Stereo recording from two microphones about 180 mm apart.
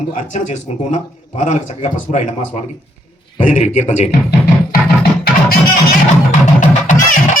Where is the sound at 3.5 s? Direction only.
40° left (ahead or behind).